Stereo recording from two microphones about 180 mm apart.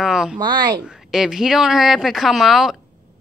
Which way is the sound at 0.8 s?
Centre (ahead or behind).